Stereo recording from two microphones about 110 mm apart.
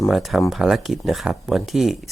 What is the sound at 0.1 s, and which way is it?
Speech, centre (ahead or behind).